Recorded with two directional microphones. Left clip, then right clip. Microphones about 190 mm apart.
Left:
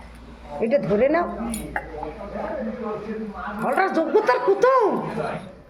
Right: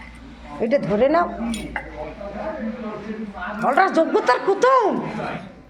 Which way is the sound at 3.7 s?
Centre (ahead or behind).